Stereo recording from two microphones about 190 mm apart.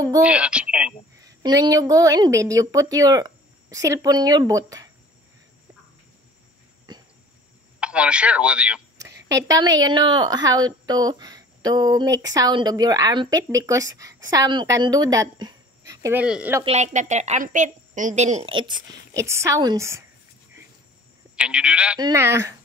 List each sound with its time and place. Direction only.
0.2 s speech: 5° right (ahead or behind)
1.2 s a woman's voice: 20° right (ahead or behind)
7.8 s speech: 5° right (ahead or behind)
8.9 s a woman's voice: 20° right (ahead or behind)
16.6 s a woman's voice: 35° right (ahead or behind); by 20.0 s 20° right (ahead or behind)
21.4 s speech: 5° right (ahead or behind)